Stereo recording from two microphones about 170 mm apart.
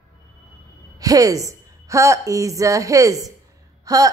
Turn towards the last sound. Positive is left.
turn(degrees=-20)  # may be behind; listen again after turning